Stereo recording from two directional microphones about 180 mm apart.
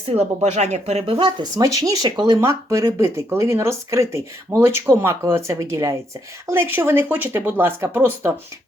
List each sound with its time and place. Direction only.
0.1 s speech: 35° right (ahead or behind); by 8.3 s 10° right (ahead or behind)